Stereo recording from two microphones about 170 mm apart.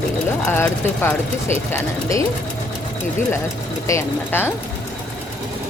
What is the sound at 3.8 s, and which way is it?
Speech, 15° left (ahead or behind).